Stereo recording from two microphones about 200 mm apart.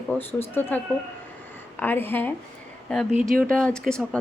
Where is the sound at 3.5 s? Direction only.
5° left (ahead or behind).